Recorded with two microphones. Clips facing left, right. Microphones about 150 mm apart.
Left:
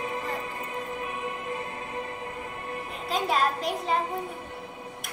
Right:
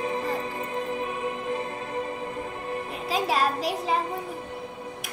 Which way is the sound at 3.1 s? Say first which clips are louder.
Right 1 dB; 5° right (ahead or behind).